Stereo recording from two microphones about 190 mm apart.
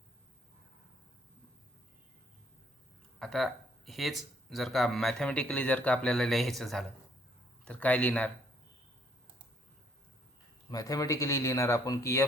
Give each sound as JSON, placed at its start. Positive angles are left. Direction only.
{"t": 3.2, "sound": "speech", "side_deg": 0}
{"t": 10.7, "sound": "speech", "side_deg": 20}